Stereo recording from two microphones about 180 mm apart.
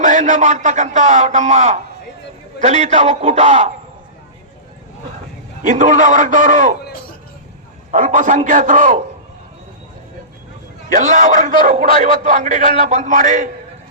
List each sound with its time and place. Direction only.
0.0 s speech: 45° right (ahead or behind)
5.6 s a man's voice: 45° right (ahead or behind)
7.9 s a man's voice: 45° right (ahead or behind)
10.8 s a man's voice: 45° right (ahead or behind)